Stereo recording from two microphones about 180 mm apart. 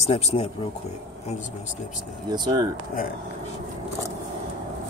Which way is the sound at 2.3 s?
20° right (ahead or behind).